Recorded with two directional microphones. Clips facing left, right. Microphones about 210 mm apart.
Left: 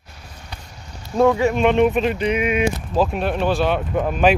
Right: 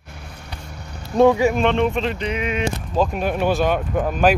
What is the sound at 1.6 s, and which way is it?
Speech, 10° left (ahead or behind).